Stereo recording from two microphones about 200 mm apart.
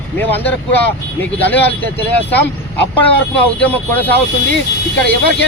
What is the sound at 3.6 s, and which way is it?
Speech, 10° left (ahead or behind).